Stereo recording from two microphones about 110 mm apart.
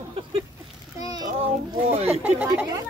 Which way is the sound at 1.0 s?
35° right (ahead or behind).